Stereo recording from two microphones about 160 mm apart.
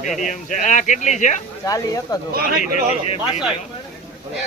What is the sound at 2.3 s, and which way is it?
Speech, 70° right (ahead or behind).